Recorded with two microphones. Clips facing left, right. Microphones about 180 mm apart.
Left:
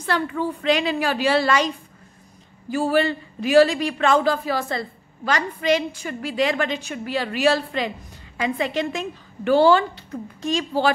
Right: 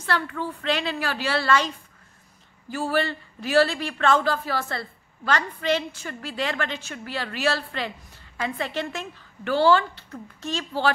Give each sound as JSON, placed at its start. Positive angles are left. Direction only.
{"t": 0.0, "sound": "speech", "side_deg": 15}
{"t": 2.7, "sound": "speech", "side_deg": 15}